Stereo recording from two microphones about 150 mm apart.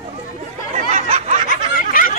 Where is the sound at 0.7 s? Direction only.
50° right (ahead or behind).